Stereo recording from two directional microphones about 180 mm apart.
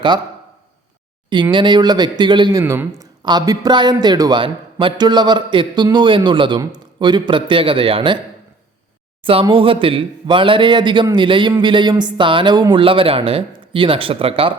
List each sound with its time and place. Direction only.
1.3 s speech: 25° right (ahead or behind)
9.2 s speech: 30° right (ahead or behind)